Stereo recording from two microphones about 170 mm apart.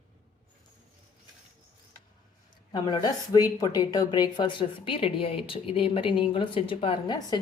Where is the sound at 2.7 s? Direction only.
25° left (ahead or behind).